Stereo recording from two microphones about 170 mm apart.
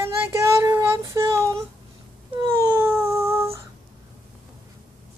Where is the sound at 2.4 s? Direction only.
15° right (ahead or behind).